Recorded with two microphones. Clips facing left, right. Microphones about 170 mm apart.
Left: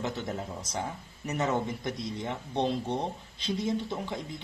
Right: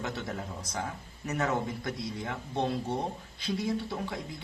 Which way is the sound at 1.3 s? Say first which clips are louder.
Left 1 dB; 20° left (ahead or behind).